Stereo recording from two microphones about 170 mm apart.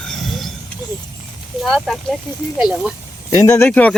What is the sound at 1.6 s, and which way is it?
Speech, 5° left (ahead or behind).